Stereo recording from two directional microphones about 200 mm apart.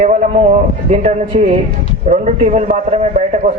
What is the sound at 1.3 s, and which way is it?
A man's voice, 35° right (ahead or behind).